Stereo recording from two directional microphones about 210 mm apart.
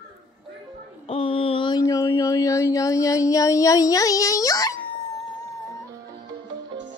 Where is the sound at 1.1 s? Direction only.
25° left (ahead or behind).